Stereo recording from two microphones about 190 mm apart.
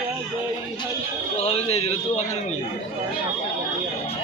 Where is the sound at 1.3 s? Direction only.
35° left (ahead or behind).